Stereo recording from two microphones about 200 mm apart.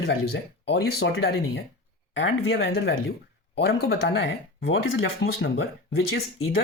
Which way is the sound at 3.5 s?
55° left (ahead or behind).